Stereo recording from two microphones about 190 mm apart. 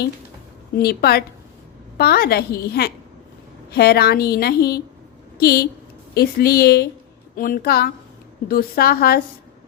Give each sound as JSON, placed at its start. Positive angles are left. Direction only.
{"t": 0.8, "sound": "a woman's voice", "side_deg": 55}